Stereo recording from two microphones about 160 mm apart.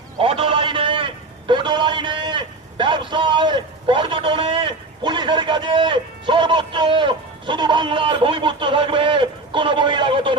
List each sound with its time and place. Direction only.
0.2 s a man's voice: 35° right (ahead or behind)